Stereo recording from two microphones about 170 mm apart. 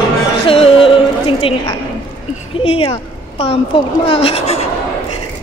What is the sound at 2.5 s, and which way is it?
A woman's voice, 35° left (ahead or behind).